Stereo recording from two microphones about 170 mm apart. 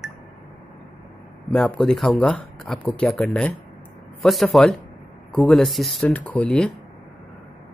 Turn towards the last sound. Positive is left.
turn(degrees=5)  # may be behind; listen again after turning